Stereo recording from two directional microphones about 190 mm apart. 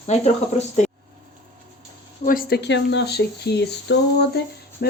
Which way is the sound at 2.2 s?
50° left (ahead or behind).